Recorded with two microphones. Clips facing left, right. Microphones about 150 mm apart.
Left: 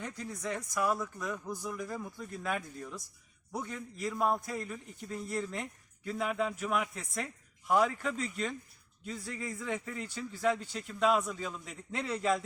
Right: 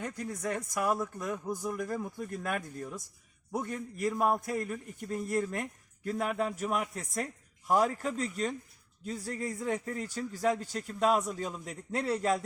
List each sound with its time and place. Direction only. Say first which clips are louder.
0.0 s a man's voice: right 3 dB; 50° right (ahead or behind)